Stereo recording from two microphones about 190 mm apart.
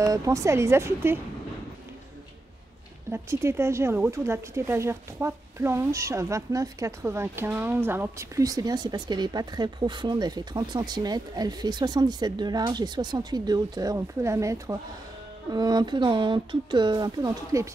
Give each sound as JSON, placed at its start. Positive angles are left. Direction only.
{"t": 0.0, "sound": "speech", "side_deg": -15}
{"t": 3.1, "sound": "speech", "side_deg": -15}